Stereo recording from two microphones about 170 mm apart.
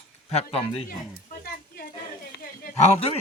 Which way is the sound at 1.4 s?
65° left (ahead or behind).